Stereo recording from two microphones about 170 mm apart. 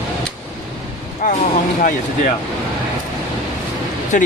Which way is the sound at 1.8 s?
55° left (ahead or behind).